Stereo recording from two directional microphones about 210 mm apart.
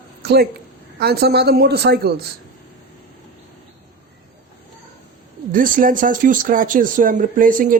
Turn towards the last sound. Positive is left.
turn(degrees=-40)  # may be behind; listen again after turning